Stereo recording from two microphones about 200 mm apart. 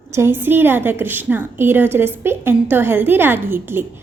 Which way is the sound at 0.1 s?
10° right (ahead or behind).